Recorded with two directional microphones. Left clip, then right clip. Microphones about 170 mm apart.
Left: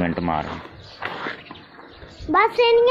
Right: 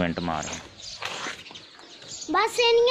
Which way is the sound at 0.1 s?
35° right (ahead or behind).